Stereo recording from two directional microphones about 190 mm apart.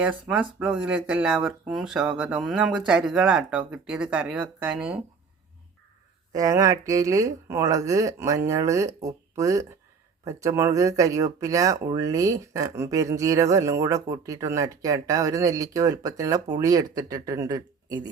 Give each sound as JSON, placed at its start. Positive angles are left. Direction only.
{"t": 0.0, "sound": "speech", "side_deg": -5}
{"t": 6.3, "sound": "speech", "side_deg": -20}